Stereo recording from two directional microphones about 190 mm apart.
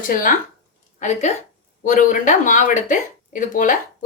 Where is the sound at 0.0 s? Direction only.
45° left (ahead or behind).